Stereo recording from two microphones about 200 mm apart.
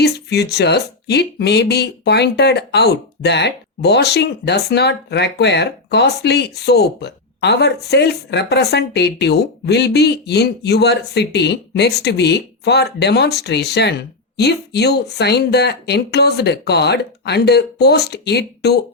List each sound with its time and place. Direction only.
0.0 s speech: 55° left (ahead or behind)